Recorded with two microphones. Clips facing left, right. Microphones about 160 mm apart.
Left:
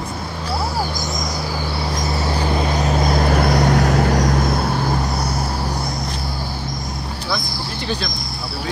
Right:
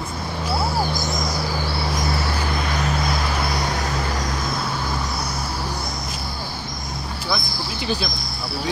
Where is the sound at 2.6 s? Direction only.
45° left (ahead or behind).